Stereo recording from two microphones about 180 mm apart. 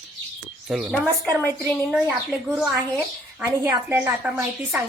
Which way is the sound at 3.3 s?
15° right (ahead or behind).